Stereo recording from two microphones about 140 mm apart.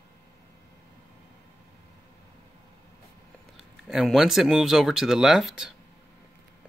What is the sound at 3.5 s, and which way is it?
Speech, centre (ahead or behind).